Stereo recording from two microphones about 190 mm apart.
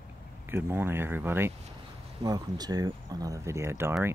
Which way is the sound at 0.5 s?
10° right (ahead or behind).